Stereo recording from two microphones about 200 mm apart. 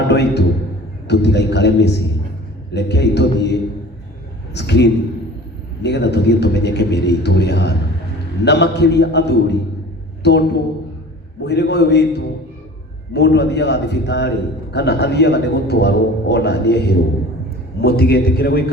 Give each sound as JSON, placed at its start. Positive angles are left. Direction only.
{"t": 0.1, "sound": "a man's voice", "side_deg": 55}
{"t": 4.5, "sound": "a man's voice", "side_deg": 55}
{"t": 11.4, "sound": "a man's voice", "side_deg": 55}